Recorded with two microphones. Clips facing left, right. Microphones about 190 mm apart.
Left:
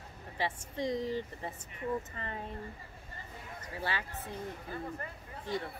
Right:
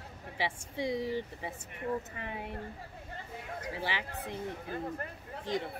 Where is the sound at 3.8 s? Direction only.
15° right (ahead or behind).